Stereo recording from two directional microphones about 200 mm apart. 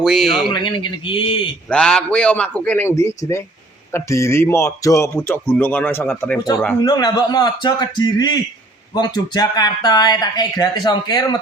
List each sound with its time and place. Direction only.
0.0 s a man's voice: centre (ahead or behind)
0.5 s speech: 25° left (ahead or behind)
1.7 s a man's voice: 5° left (ahead or behind)
6.8 s speech: 20° left (ahead or behind)